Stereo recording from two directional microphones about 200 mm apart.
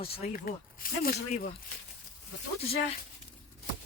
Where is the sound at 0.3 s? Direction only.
45° left (ahead or behind).